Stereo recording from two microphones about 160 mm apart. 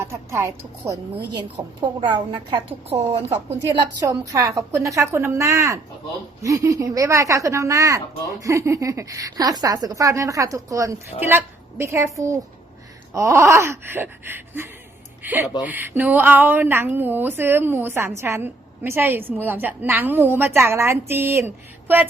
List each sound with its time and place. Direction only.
0.0 s a woman's voice: 20° right (ahead or behind); by 3.3 s 40° right (ahead or behind)
4.0 s a woman's voice: 20° right (ahead or behind)